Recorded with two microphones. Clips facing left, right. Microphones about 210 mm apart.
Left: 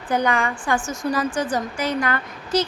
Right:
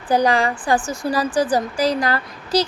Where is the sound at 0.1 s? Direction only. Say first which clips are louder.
Right 4 dB; 35° right (ahead or behind).